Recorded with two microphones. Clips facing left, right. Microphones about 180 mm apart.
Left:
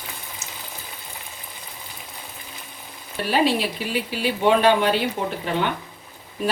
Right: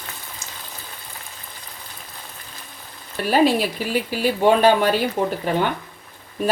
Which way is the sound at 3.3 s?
45° right (ahead or behind).